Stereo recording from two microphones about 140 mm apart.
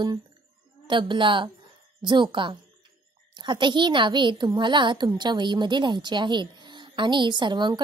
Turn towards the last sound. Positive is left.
turn(degrees=-35)  # may be behind; listen again after turning